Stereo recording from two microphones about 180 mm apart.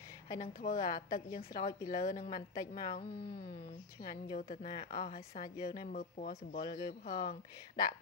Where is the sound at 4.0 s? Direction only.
50° left (ahead or behind).